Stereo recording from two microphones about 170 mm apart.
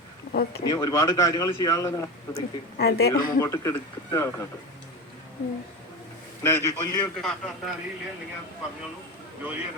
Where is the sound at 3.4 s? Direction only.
15° left (ahead or behind).